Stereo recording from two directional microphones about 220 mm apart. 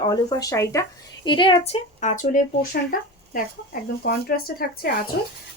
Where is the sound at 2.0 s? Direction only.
35° left (ahead or behind).